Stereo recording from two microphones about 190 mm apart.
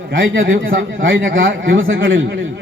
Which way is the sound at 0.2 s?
50° right (ahead or behind).